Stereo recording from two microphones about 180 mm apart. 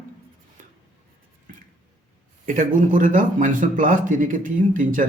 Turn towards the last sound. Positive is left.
turn(degrees=-50)  # may be behind; listen again after turning